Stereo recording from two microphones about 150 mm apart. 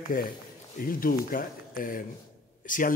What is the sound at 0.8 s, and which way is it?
Speech, 70° left (ahead or behind).